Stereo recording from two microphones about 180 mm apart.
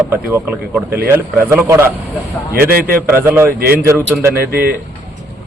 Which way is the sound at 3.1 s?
10° right (ahead or behind).